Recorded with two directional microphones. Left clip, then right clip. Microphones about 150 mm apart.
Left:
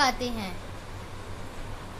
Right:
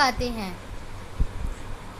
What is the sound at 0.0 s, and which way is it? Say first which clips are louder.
Speech: right 2 dB; 40° right (ahead or behind).